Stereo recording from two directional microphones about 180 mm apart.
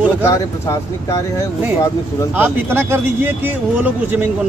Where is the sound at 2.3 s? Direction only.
10° right (ahead or behind).